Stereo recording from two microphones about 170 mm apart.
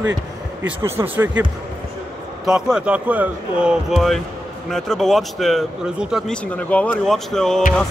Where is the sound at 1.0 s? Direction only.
10° right (ahead or behind).